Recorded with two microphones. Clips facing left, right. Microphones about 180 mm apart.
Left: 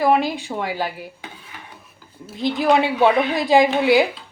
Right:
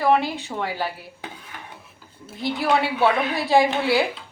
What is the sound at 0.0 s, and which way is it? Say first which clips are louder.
Speech: left 2 dB; 15° left (ahead or behind).